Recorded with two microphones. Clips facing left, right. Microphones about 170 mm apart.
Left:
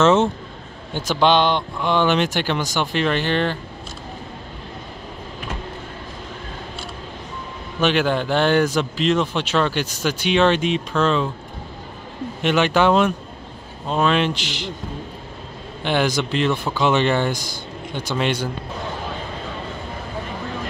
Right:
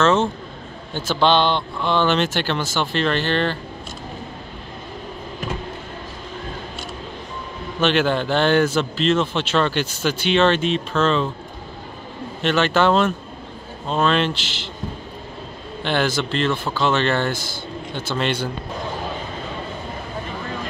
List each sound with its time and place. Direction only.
0.0 s a man's voice: 20° left (ahead or behind)
7.8 s speech: 10° left (ahead or behind)
12.4 s speech: 15° left (ahead or behind)
15.8 s speech: 10° left (ahead or behind)